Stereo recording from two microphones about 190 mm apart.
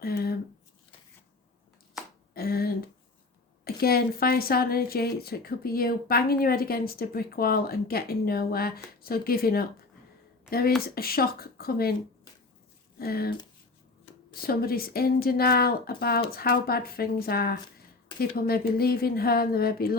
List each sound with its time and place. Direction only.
0.0 s squish: 55° left (ahead or behind)
2.3 s a sound: 50° left (ahead or behind)
3.6 s a woman's voice: 55° left (ahead or behind)
10.8 s a woman's voice: 50° left (ahead or behind)
13.0 s a woman's voice: 50° left (ahead or behind)
14.4 s a woman's voice: 50° left (ahead or behind)